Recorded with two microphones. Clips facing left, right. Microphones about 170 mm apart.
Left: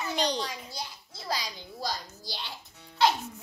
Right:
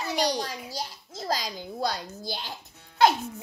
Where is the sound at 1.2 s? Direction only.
45° right (ahead or behind).